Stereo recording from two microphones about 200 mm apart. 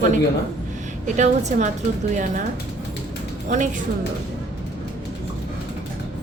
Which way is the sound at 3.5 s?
40° right (ahead or behind).